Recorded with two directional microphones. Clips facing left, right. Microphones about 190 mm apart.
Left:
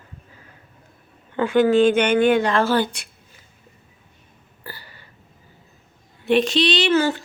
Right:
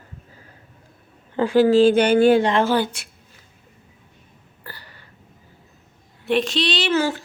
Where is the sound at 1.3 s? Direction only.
35° right (ahead or behind); by 3.0 s 10° right (ahead or behind).